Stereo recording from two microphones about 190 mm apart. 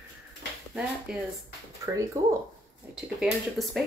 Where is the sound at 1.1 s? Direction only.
5° right (ahead or behind).